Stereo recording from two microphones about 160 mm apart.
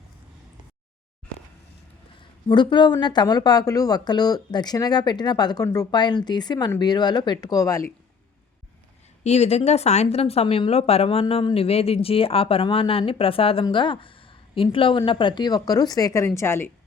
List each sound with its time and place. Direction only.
2.5 s speech: 30° left (ahead or behind)
9.2 s speech: 45° left (ahead or behind); by 16.7 s 15° left (ahead or behind)